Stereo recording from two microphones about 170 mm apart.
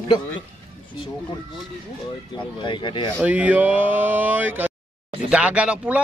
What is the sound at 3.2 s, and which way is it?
Speech, 10° right (ahead or behind).